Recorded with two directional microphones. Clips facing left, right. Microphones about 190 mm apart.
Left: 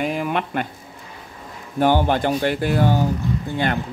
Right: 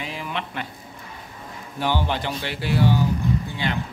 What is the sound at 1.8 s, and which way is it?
Speech, 50° left (ahead or behind).